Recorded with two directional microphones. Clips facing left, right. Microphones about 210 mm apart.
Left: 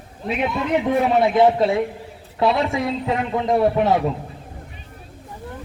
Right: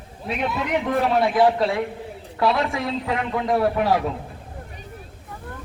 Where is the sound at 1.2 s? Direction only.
25° left (ahead or behind).